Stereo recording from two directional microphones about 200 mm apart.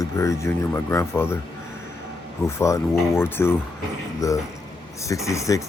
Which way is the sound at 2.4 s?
15° left (ahead or behind).